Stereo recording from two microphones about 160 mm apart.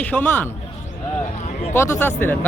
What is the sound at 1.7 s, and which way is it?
Speech, 15° left (ahead or behind).